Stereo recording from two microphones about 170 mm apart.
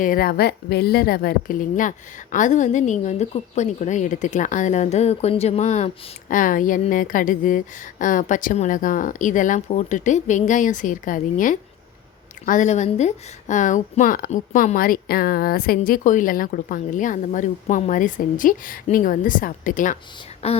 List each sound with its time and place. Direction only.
0.0 s a woman's voice: 60° left (ahead or behind)
20.4 s speech: 35° left (ahead or behind)